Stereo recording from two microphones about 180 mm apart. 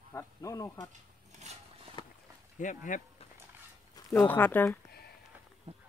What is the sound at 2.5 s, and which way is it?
Speech, 45° left (ahead or behind).